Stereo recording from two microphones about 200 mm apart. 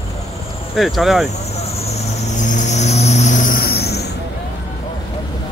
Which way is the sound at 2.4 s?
40° left (ahead or behind).